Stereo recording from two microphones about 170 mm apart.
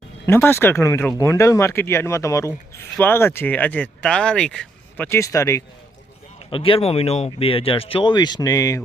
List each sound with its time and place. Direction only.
0.3 s speech: 15° left (ahead or behind)
5.0 s speech: 15° left (ahead or behind)
6.5 s speech: 30° left (ahead or behind)